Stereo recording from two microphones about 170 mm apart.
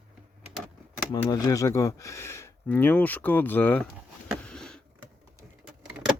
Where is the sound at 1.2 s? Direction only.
20° left (ahead or behind).